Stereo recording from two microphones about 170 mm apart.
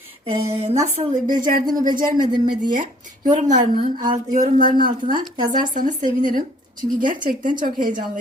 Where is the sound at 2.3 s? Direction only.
25° right (ahead or behind).